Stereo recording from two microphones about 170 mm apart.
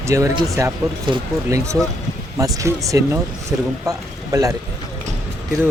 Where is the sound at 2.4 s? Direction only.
20° right (ahead or behind).